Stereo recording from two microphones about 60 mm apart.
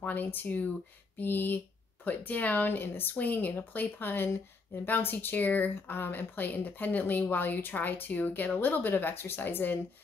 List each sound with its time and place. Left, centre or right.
0.0 s speech: left